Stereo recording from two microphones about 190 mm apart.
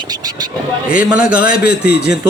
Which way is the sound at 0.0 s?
20° right (ahead or behind).